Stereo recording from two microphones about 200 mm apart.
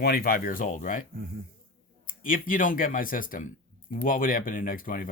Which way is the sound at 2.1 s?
45° left (ahead or behind).